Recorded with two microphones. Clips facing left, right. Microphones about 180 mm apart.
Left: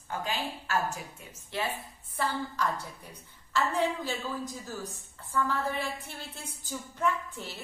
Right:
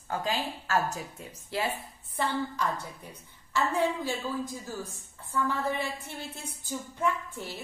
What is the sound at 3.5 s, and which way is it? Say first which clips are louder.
Speech: right 1 dB; 15° right (ahead or behind).